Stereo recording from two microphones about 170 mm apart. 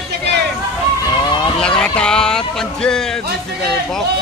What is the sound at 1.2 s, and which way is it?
Vehicle, 25° left (ahead or behind).